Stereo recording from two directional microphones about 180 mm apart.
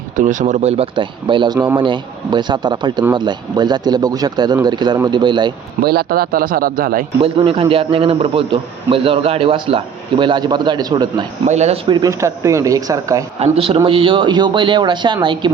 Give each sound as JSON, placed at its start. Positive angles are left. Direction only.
{"t": 0.2, "sound": "speech", "side_deg": -45}
{"t": 1.5, "sound": "a man's voice", "side_deg": -10}
{"t": 1.8, "sound": "a man's voice", "side_deg": -25}
{"t": 5.8, "sound": "a man's voice", "side_deg": -60}
{"t": 7.2, "sound": "a man's voice", "side_deg": -30}
{"t": 11.4, "sound": "speech", "side_deg": -40}
{"t": 11.9, "sound": "a man's voice", "side_deg": -20}
{"t": 13.4, "sound": "a man's voice", "side_deg": -30}